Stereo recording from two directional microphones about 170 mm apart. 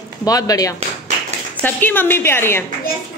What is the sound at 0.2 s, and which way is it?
Speech, 20° left (ahead or behind).